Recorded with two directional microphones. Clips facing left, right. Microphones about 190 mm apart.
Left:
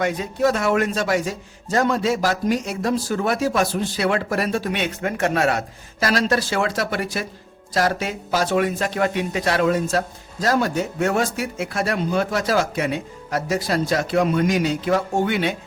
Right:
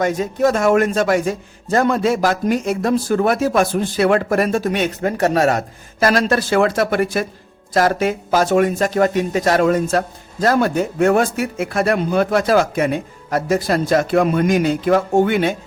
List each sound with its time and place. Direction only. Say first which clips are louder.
0.0 s a man's voice: right 4 dB; 45° right (ahead or behind)